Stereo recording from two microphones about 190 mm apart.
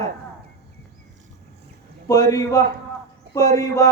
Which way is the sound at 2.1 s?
20° left (ahead or behind).